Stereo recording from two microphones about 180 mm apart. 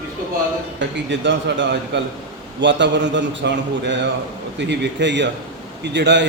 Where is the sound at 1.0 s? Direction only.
85° right.